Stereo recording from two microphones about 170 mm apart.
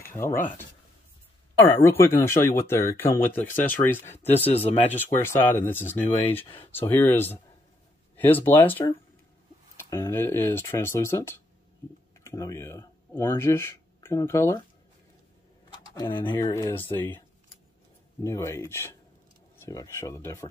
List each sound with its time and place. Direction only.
0.1 s cutlery: 15° left (ahead or behind)
1.6 s speech: 15° left (ahead or behind)
4.5 s speech: 35° left (ahead or behind)
5.2 s speech: 15° left (ahead or behind)
9.8 s speech: 15° left (ahead or behind)
15.9 s speech: 20° left (ahead or behind)
16.7 s speech: 10° left (ahead or behind)
18.2 s speech: 15° left (ahead or behind)